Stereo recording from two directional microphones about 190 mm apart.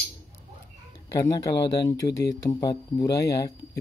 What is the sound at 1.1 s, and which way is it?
A man's voice, 15° left (ahead or behind).